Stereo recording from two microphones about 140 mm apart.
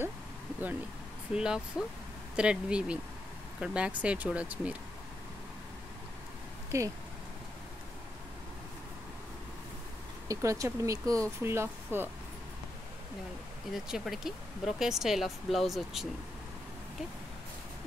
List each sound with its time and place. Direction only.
1.3 s speech: 5° right (ahead or behind)
6.7 s speech: 20° right (ahead or behind)
10.2 s speech: 20° right (ahead or behind)
13.7 s speech: centre (ahead or behind)